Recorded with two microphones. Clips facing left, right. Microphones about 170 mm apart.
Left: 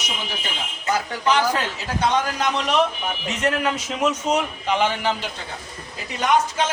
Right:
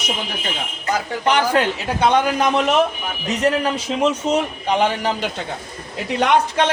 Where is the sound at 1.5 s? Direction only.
65° right (ahead or behind).